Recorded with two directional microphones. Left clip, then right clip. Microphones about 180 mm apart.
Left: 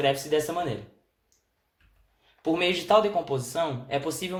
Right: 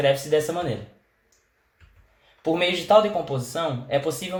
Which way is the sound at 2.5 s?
35° left (ahead or behind).